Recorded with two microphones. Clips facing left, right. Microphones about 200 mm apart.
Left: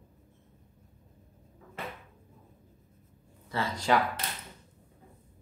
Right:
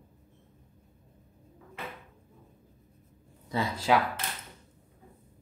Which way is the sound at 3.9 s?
Centre (ahead or behind).